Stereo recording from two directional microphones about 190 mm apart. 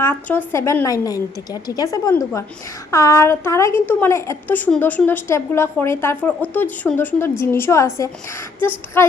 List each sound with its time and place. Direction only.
0.0 s a woman's voice: 10° left (ahead or behind)